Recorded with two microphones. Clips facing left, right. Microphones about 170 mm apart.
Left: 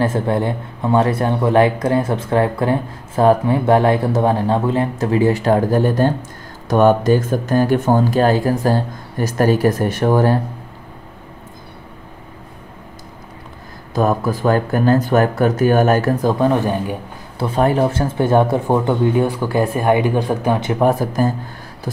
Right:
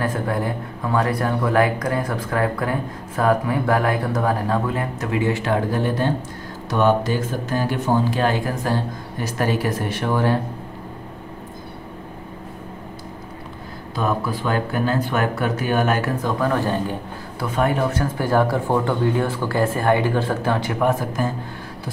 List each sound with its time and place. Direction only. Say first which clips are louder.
0.0 s speech: left 5 dB; 25° left (ahead or behind); by 10.3 s 40° left (ahead or behind)
13.9 s speech: left 6 dB; 45° left (ahead or behind); by 16.9 s 20° left (ahead or behind)
17.4 s speech: left 5 dB; 30° left (ahead or behind)
20.8 s speech: left 6 dB; 35° left (ahead or behind)